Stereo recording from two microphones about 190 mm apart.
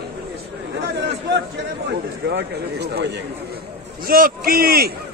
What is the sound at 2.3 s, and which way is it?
Speech, 60° right (ahead or behind).